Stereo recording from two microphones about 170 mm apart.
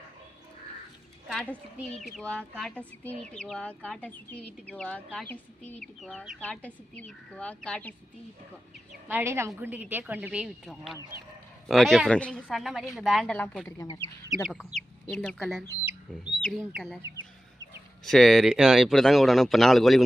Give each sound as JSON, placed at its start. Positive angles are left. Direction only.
{"t": 1.3, "sound": "a woman's voice", "side_deg": 5}
{"t": 8.9, "sound": "a woman's voice", "side_deg": -10}
{"t": 13.8, "sound": "speech", "side_deg": 20}
{"t": 14.3, "sound": "speech", "side_deg": 0}
{"t": 18.0, "sound": "speech", "side_deg": 0}